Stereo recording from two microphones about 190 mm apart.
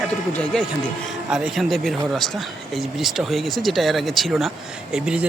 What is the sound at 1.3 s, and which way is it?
Speech, centre (ahead or behind).